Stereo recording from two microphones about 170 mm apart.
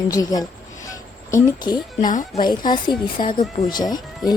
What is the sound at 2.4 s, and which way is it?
Speech, 25° left (ahead or behind).